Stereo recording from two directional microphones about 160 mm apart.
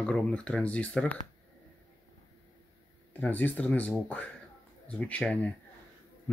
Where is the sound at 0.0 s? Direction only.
5° left (ahead or behind).